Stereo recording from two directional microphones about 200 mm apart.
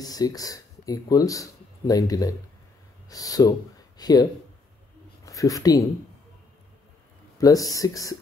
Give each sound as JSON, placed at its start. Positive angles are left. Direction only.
{"t": 0.0, "sound": "speech", "side_deg": 20}
{"t": 7.3, "sound": "speech", "side_deg": 15}